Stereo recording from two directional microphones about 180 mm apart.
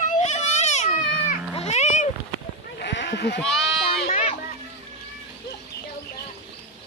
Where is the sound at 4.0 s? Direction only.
40° left (ahead or behind).